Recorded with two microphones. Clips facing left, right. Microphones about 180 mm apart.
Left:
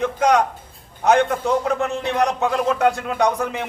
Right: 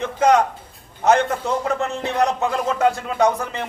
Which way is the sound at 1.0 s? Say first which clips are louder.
Left 1 dB; centre (ahead or behind).